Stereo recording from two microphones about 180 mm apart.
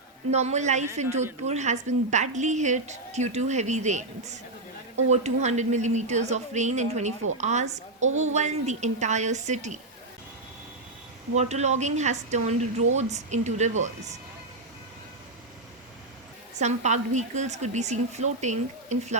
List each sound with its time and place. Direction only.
0.3 s a woman's voice: 40° right (ahead or behind)
5.0 s a woman's voice: 40° right (ahead or behind)
11.3 s a woman's voice: 40° right (ahead or behind)
16.6 s a woman's voice: 40° right (ahead or behind)